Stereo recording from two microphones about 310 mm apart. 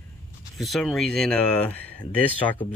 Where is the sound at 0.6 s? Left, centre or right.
Centre.